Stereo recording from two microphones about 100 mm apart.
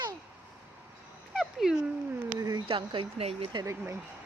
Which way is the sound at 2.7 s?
60° right (ahead or behind).